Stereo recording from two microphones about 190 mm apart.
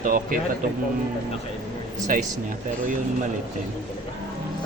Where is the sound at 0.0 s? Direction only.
45° right (ahead or behind).